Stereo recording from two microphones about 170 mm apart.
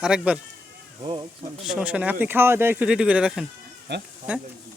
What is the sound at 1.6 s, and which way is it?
Speech, 5° right (ahead or behind).